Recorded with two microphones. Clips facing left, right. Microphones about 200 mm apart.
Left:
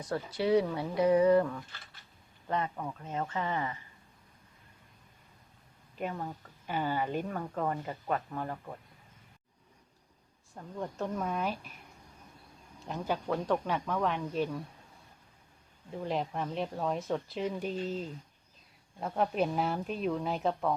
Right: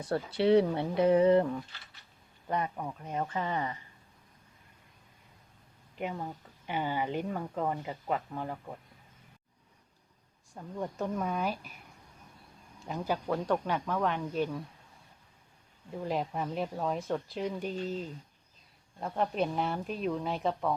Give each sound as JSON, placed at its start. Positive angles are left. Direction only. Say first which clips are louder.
{"t": 0.0, "sound": "speech", "louder": "right 4 dB", "side_deg": -30}
{"t": 2.5, "sound": "speech", "louder": "even", "side_deg": -15}
{"t": 6.0, "sound": "speech", "louder": "even", "side_deg": -10}
{"t": 10.5, "sound": "speech", "louder": "right 2 dB", "side_deg": -5}
{"t": 12.9, "sound": "speech", "louder": "right 1 dB", "side_deg": 0}
{"t": 16.0, "sound": "speech", "louder": "right 1 dB", "side_deg": 0}